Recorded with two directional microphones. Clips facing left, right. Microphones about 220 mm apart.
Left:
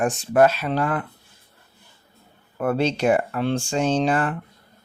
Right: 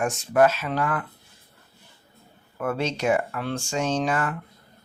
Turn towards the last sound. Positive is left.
turn(degrees=30)  # may be behind; listen again after turning